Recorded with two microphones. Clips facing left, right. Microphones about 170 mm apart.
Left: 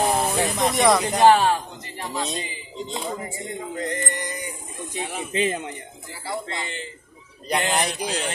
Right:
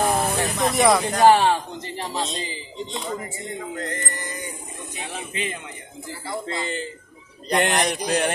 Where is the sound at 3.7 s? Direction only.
20° left (ahead or behind).